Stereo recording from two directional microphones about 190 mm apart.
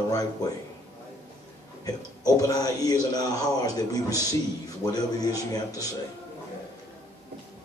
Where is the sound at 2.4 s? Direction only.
20° left (ahead or behind).